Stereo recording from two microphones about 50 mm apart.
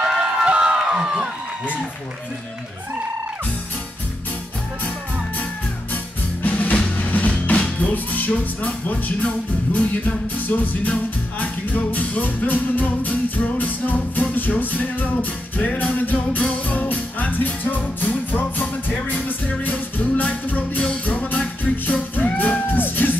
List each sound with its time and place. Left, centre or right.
0.0 s crowd: centre
6.4 s music: left